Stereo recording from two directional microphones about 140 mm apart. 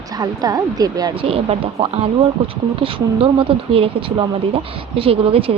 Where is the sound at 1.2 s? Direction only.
40° right (ahead or behind).